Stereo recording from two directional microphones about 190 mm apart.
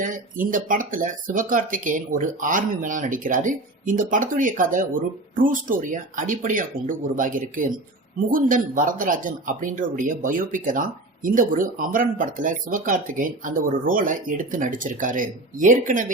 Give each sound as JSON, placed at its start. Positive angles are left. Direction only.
{"t": 0.0, "sound": "speech", "side_deg": -45}